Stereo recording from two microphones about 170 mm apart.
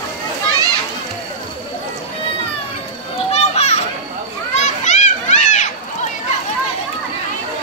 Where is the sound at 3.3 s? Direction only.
40° left (ahead or behind).